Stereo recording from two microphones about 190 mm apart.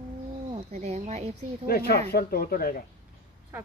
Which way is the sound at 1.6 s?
55° left (ahead or behind).